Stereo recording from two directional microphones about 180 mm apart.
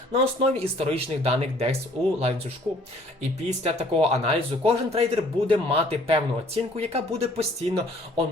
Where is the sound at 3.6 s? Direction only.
35° right (ahead or behind).